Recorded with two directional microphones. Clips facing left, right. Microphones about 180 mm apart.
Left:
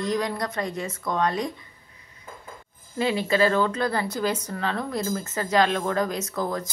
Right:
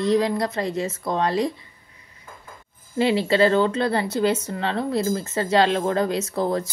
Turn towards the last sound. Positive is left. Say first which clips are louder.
# right 5 dB
turn(degrees=-30)  # may be behind; listen again after turning